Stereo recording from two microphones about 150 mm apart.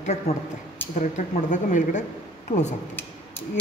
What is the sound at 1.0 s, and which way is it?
Speech, 55° left (ahead or behind).